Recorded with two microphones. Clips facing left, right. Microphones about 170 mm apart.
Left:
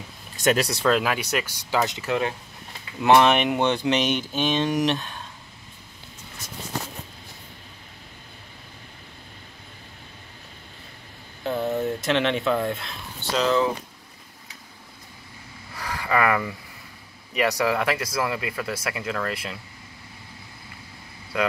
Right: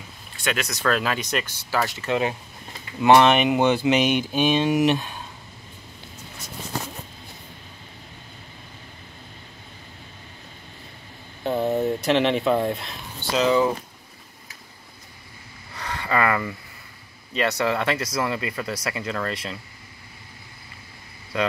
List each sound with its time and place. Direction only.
0.4 s speech: 40° left (ahead or behind)
0.8 s speech: 15° left (ahead or behind)
2.0 s speech: 5° right (ahead or behind)
11.5 s speech: 30° right (ahead or behind)
11.8 s speech: centre (ahead or behind)
15.7 s a sound: 5° left (ahead or behind)
17.3 s speech: 10° left (ahead or behind)